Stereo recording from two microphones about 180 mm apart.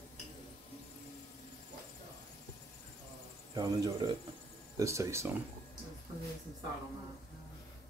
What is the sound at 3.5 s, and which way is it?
Speech, 20° right (ahead or behind).